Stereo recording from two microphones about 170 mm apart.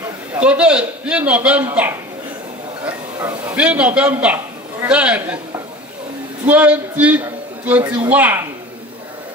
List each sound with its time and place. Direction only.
0.3 s a man's voice: 5° right (ahead or behind)
6.4 s a man's voice: 5° right (ahead or behind)